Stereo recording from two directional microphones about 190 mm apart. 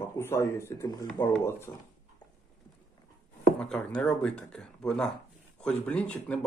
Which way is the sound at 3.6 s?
5° left (ahead or behind).